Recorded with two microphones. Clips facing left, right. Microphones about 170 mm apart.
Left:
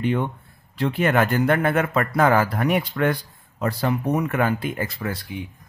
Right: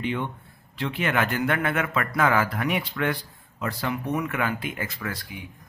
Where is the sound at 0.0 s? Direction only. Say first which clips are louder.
Left 5 dB; 45° left (ahead or behind).